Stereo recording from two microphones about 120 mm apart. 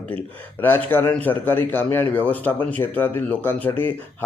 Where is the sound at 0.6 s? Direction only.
15° left (ahead or behind).